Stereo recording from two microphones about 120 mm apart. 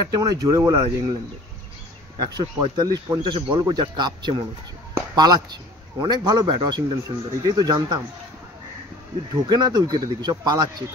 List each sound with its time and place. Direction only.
0.0 s speech: 35° right (ahead or behind)
2.1 s speech: 35° right (ahead or behind)
9.3 s speech: 35° right (ahead or behind)